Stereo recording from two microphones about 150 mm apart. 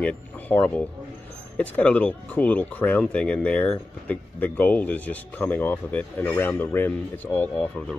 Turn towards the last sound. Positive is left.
turn(degrees=10)  # may be behind; listen again after turning